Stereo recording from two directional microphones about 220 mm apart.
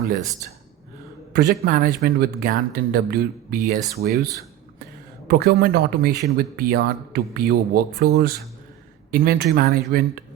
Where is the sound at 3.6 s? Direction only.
40° right (ahead or behind).